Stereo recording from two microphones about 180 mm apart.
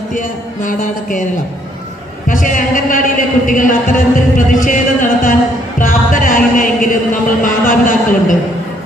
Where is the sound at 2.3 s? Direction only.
50° left (ahead or behind).